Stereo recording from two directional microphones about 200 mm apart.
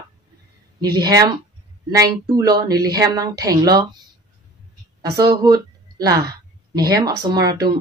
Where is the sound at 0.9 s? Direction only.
20° right (ahead or behind).